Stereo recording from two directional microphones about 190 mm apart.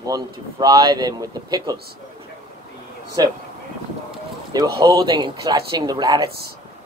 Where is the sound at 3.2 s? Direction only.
20° right (ahead or behind).